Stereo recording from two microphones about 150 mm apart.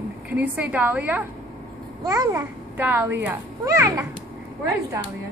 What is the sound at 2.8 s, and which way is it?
Speech, 15° right (ahead or behind).